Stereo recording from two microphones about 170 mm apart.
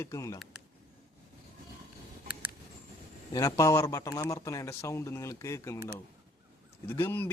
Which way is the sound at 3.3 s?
20° left (ahead or behind).